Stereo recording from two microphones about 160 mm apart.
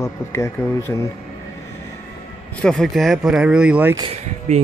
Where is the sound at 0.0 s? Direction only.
15° left (ahead or behind).